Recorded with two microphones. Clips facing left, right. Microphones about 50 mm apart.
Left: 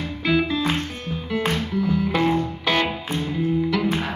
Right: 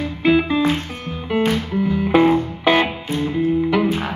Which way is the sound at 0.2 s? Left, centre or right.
Right.